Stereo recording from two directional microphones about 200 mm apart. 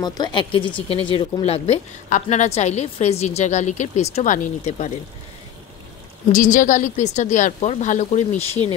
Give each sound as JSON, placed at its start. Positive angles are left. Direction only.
{"t": 0.0, "sound": "speech", "side_deg": 20}
{"t": 6.3, "sound": "speech", "side_deg": 40}